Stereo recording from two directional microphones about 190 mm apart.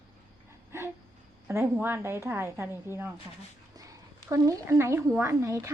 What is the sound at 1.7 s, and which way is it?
A woman's voice, 10° right (ahead or behind).